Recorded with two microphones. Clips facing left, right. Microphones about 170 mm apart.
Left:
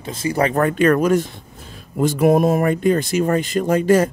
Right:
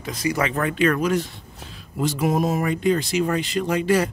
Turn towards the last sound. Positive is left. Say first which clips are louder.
# left 5 dB
turn(degrees=45)  # may be behind; listen again after turning